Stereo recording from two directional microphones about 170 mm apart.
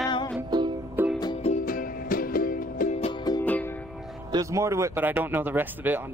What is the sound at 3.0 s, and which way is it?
Music, 35° left (ahead or behind).